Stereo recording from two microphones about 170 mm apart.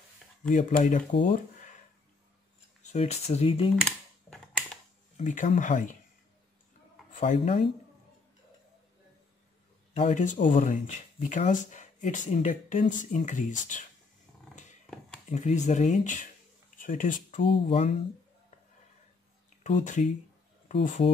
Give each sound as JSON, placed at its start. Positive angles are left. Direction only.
{"t": 0.4, "sound": "speech", "side_deg": 50}
{"t": 1.3, "sound": "a sound", "side_deg": 45}
{"t": 2.8, "sound": "speech", "side_deg": 40}
{"t": 5.1, "sound": "speech", "side_deg": 50}
{"t": 7.1, "sound": "speech", "side_deg": 50}
{"t": 10.0, "sound": "speech", "side_deg": 50}
{"t": 15.3, "sound": "speech", "side_deg": 45}
{"t": 17.4, "sound": "speech", "side_deg": 30}
{"t": 19.6, "sound": "speech", "side_deg": 45}